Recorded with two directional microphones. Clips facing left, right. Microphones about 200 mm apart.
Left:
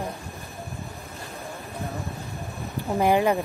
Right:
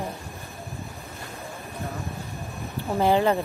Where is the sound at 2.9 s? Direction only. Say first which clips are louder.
Even; 15° left (ahead or behind).